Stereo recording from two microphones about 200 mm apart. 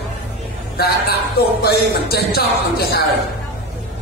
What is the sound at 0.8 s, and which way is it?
Speech, 50° left (ahead or behind).